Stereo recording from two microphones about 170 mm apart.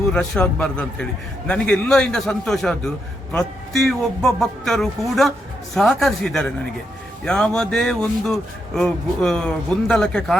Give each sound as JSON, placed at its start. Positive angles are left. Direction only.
{"t": 0.1, "sound": "speech", "side_deg": 5}